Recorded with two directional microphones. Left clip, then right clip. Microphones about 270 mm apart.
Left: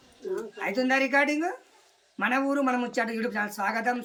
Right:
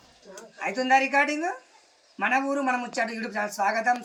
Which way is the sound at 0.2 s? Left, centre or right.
Left.